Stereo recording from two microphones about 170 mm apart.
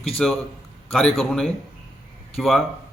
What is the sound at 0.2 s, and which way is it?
A man's voice, 5° left (ahead or behind).